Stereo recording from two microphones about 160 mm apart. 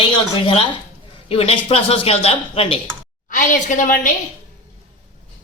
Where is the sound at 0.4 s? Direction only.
35° left (ahead or behind).